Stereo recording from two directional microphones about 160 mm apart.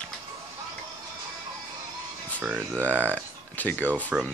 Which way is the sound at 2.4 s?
10° right (ahead or behind).